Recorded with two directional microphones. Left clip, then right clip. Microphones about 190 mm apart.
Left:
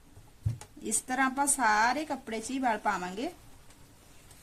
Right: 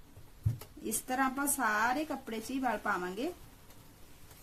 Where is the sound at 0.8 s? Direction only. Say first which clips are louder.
Left 3 dB; 35° left (ahead or behind).